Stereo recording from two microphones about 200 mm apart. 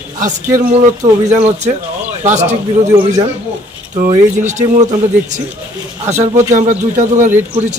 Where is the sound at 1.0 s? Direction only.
30° right (ahead or behind).